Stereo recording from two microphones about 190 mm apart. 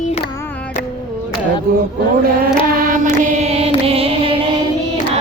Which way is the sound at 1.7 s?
50° right (ahead or behind).